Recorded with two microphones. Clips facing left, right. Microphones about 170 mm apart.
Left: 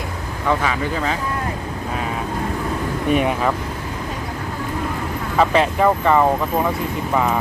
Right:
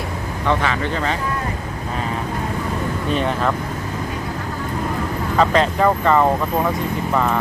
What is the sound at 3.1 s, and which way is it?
Speech, 10° left (ahead or behind).